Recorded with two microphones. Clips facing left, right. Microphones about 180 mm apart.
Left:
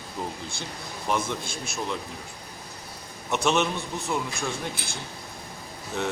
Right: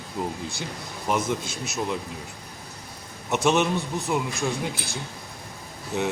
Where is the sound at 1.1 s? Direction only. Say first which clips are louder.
Right 2 dB; 15° right (ahead or behind).